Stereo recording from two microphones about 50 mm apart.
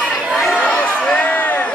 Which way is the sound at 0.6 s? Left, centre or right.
Left.